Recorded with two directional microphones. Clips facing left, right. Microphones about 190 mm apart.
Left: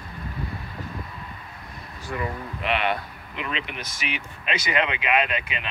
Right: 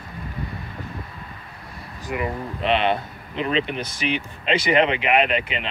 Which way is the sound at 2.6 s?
25° right (ahead or behind).